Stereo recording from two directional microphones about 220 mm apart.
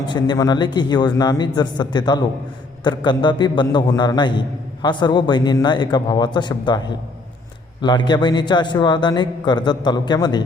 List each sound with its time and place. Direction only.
0.0 s a man's voice: 20° left (ahead or behind)